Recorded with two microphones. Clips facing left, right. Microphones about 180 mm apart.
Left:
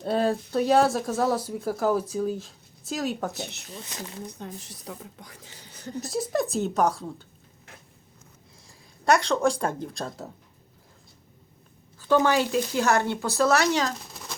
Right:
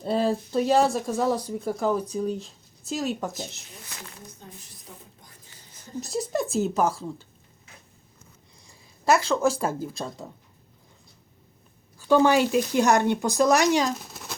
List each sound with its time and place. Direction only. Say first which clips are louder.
0.0 s speech: even; centre (ahead or behind)
3.3 s speech: left 1 dB; 65° left (ahead or behind)
4.3 s speech: left 8 dB; 75° left (ahead or behind)
6.0 s speech: left 1 dB; centre (ahead or behind)
8.6 s speech: even; 5° right (ahead or behind)
11.9 s speech: right 2 dB; 15° right (ahead or behind)
14.1 s a sound: right 1 dB; 5° right (ahead or behind)